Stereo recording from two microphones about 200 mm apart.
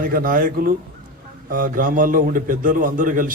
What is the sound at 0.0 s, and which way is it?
A man's voice, 45° right (ahead or behind).